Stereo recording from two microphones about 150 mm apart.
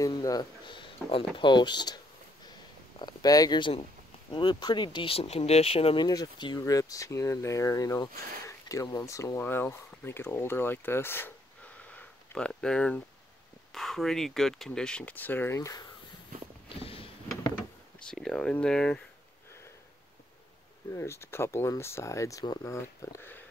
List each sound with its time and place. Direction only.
0.0 s speech: 25° left (ahead or behind)
3.0 s speech: 25° left (ahead or behind)
6.0 s speech: 30° left (ahead or behind)
16.6 s a sound: 40° left (ahead or behind)
18.0 s speech: 5° left (ahead or behind)
20.9 s speech: 20° left (ahead or behind)